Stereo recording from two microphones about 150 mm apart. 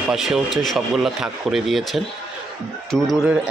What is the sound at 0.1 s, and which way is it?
Speech, 5° right (ahead or behind).